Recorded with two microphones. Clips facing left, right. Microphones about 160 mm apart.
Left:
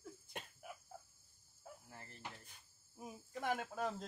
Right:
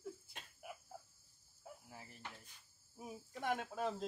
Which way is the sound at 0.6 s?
5° right (ahead or behind).